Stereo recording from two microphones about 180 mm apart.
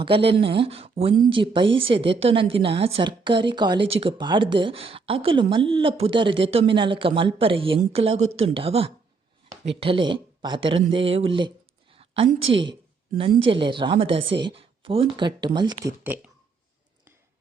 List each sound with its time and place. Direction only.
0.0 s a woman's voice: 30° right (ahead or behind)
12.4 s a woman's voice: 90° right
13.5 s a woman's voice: 30° right (ahead or behind)
16.0 s speech: 10° right (ahead or behind)